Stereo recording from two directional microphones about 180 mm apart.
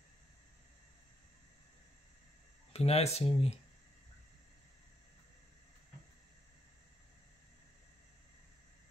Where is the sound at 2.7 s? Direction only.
35° left (ahead or behind).